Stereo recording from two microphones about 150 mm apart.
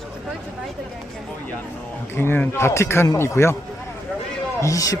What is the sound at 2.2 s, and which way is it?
A man's voice, 15° left (ahead or behind).